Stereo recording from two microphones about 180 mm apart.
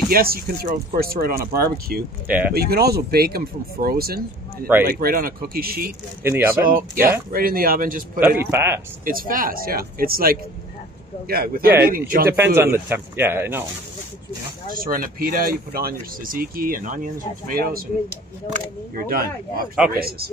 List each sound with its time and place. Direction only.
0.1 s speech: 55° right (ahead or behind)
2.2 s speech: 10° right (ahead or behind)
2.5 s speech: 60° right (ahead or behind)
6.2 s speech: 10° right (ahead or behind)
6.7 s speech: 55° right (ahead or behind)
8.4 s speech: 15° right (ahead or behind)
9.0 s speech: 50° right (ahead or behind)
12.3 s speech: 15° right (ahead or behind)
14.7 s speech: 50° right (ahead or behind)
19.9 s speech: 55° right (ahead or behind)